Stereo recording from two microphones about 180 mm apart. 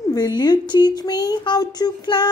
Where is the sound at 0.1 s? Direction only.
20° left (ahead or behind).